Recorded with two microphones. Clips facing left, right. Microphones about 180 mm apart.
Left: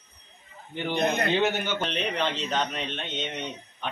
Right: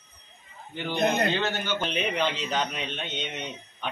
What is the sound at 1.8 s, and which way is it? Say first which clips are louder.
Speech: right 1 dB; 5° right (ahead or behind).